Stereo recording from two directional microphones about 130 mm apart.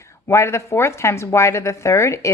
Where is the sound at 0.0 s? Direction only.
20° left (ahead or behind).